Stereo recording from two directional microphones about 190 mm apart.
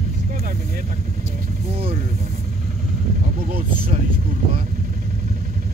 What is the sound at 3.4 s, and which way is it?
Vehicle, 50° right (ahead or behind).